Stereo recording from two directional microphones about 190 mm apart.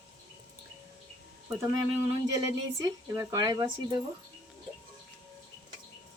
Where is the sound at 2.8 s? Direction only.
15° right (ahead or behind).